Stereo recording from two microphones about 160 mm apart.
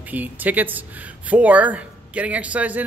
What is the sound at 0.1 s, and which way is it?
Speech, 10° right (ahead or behind).